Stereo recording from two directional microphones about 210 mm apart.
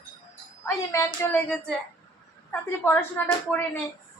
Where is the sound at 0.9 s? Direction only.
10° left (ahead or behind).